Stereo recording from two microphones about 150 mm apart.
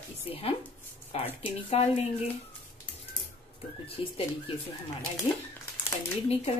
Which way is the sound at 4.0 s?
35° left (ahead or behind).